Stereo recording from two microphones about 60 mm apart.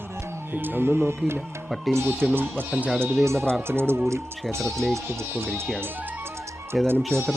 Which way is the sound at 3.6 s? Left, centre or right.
Right.